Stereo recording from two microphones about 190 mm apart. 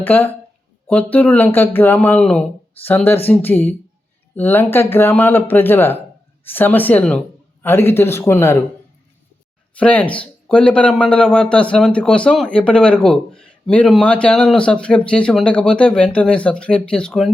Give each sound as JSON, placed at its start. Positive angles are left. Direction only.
{"t": 0.0, "sound": "speech", "side_deg": 10}
{"t": 9.7, "sound": "speech", "side_deg": 5}